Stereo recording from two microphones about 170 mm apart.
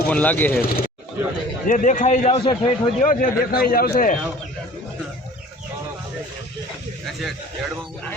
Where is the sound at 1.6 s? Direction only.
50° left (ahead or behind).